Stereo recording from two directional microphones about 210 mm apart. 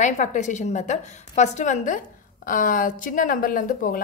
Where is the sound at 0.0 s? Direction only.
35° left (ahead or behind).